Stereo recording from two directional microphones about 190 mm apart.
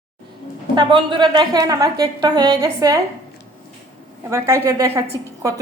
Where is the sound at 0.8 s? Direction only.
25° right (ahead or behind).